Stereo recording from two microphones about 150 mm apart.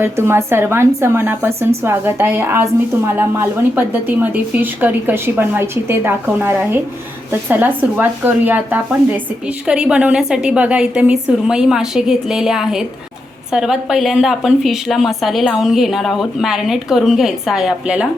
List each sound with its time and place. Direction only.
0.0 s a woman's voice: 15° right (ahead or behind)